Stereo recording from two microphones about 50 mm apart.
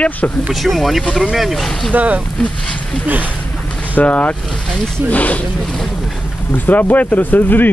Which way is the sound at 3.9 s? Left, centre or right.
Left.